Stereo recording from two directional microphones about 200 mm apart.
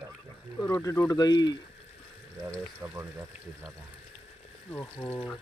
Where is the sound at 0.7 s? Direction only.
15° left (ahead or behind).